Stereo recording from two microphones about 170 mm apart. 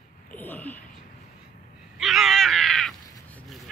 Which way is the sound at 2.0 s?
Centre (ahead or behind).